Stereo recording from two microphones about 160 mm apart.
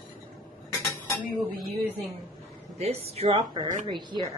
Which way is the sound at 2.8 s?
40° right (ahead or behind).